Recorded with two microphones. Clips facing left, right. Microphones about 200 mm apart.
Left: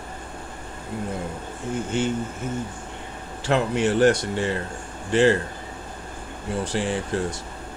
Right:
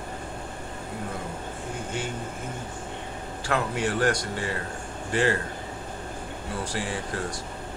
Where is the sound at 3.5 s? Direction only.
25° left (ahead or behind).